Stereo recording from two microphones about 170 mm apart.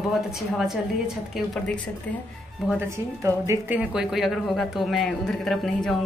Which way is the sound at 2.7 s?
15° right (ahead or behind).